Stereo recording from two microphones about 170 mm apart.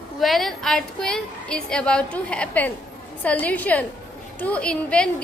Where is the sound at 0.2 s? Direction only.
Centre (ahead or behind).